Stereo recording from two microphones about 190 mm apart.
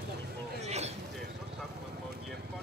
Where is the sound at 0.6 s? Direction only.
35° right (ahead or behind).